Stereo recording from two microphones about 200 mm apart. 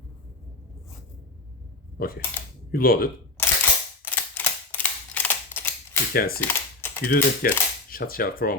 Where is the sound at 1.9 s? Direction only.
50° left (ahead or behind).